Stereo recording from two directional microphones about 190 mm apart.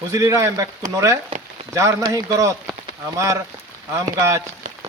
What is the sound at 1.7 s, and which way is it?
Speech, 15° right (ahead or behind).